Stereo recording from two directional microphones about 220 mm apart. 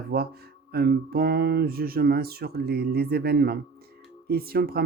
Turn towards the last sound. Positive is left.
turn(degrees=-45)  # may be behind; listen again after turning